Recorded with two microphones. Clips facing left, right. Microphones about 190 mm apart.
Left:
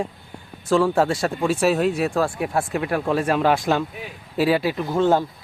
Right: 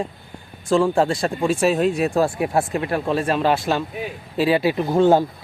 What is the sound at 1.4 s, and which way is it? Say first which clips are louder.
Speech: right 1 dB; 5° left (ahead or behind).